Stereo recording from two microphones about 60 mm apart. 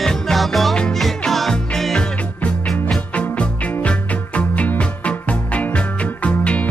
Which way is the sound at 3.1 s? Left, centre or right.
Left.